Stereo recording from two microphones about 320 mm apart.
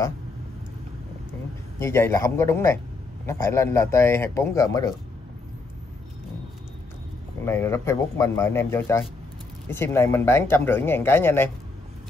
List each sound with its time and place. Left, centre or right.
1.8 s speech: centre
7.4 s speech: centre